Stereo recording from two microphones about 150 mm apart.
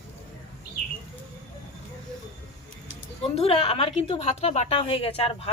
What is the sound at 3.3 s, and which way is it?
A woman's voice, 40° left (ahead or behind).